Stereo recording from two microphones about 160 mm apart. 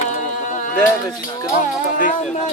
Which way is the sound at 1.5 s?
55° left (ahead or behind).